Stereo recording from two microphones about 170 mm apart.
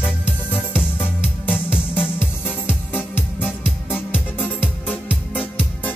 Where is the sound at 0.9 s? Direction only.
10° left (ahead or behind).